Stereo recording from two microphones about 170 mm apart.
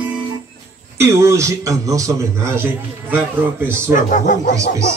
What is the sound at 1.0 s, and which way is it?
A man's voice, 15° right (ahead or behind).